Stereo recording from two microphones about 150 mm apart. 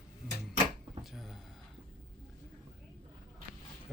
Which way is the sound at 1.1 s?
Centre (ahead or behind).